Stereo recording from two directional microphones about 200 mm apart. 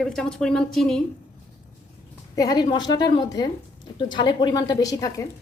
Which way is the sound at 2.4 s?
20° left (ahead or behind).